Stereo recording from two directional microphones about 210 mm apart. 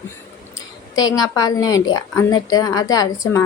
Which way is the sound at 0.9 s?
15° left (ahead or behind).